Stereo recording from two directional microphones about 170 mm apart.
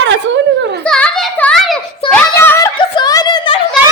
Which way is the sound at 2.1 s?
15° left (ahead or behind).